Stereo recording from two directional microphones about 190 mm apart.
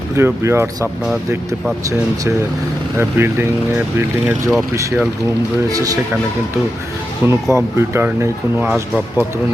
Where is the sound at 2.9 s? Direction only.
10° right (ahead or behind).